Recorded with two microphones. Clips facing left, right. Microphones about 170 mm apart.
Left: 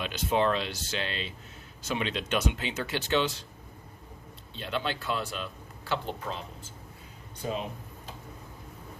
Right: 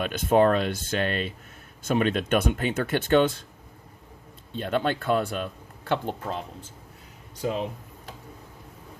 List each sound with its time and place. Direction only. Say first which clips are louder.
0.0 s speech: right 7 dB; 50° right (ahead or behind)
4.5 s speech: right 7 dB; 50° right (ahead or behind)